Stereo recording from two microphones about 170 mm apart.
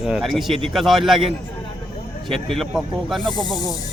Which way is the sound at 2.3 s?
Centre (ahead or behind).